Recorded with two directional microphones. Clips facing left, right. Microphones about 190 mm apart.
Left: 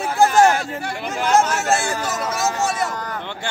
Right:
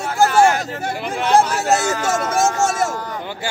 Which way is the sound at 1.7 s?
50° right (ahead or behind).